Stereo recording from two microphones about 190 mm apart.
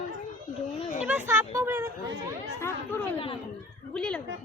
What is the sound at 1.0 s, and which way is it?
Speech, 10° right (ahead or behind).